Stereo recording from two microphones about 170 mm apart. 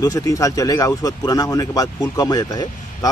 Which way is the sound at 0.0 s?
20° left (ahead or behind).